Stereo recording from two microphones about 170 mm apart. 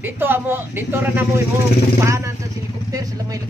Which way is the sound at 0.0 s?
10° right (ahead or behind).